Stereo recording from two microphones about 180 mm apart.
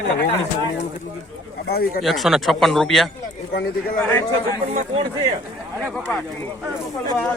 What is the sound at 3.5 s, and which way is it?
Speech, 60° left (ahead or behind).